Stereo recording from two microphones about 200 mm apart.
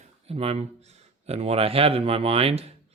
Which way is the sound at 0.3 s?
30° right (ahead or behind).